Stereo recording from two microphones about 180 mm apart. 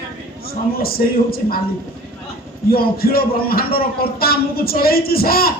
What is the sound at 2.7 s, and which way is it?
Speech, 55° left (ahead or behind).